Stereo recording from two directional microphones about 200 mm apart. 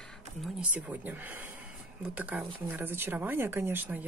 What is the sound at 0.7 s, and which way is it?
Speech, 10° right (ahead or behind).